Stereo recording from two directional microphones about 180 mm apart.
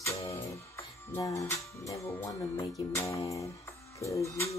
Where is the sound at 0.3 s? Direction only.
15° left (ahead or behind).